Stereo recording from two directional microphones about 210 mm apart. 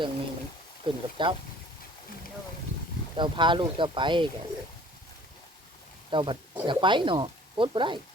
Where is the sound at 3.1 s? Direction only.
20° right (ahead or behind).